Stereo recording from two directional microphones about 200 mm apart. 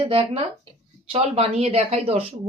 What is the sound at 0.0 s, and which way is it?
Speech, 30° right (ahead or behind).